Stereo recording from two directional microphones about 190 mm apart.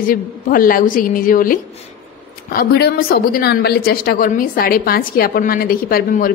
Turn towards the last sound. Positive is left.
turn(degrees=50)  # may be behind; listen again after turning